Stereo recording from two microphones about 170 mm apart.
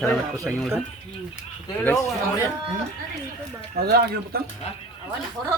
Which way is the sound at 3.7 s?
65° right (ahead or behind).